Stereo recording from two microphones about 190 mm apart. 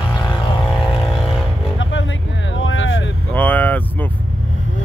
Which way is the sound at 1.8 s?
80° left.